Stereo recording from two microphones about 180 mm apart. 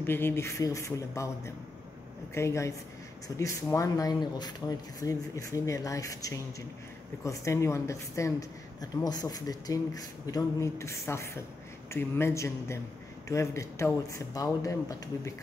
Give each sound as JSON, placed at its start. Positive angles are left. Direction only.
{"t": 0.0, "sound": "speech", "side_deg": 10}